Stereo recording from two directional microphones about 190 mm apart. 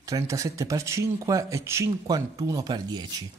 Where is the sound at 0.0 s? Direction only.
15° right (ahead or behind).